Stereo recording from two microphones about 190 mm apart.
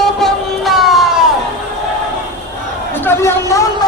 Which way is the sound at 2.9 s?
10° left (ahead or behind).